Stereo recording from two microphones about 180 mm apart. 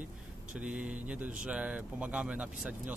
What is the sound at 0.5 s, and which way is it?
Speech, 5° right (ahead or behind).